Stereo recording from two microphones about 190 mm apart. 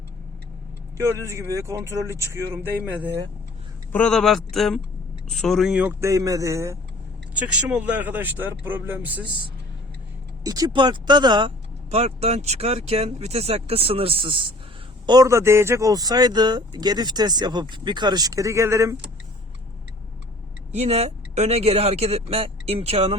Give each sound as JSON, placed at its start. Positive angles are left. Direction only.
{"t": 0.9, "sound": "speech", "side_deg": -15}
{"t": 3.9, "sound": "speech", "side_deg": 5}
{"t": 10.4, "sound": "speech", "side_deg": -20}
{"t": 20.7, "sound": "speech", "side_deg": -35}